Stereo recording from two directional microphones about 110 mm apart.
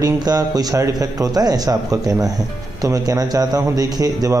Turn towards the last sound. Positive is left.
turn(degrees=-35)  # may be behind; listen again after turning